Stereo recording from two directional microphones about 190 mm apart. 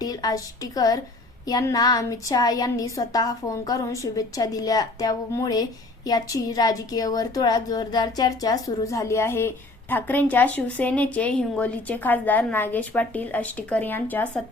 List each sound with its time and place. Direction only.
0.0 s a woman's voice: 20° left (ahead or behind)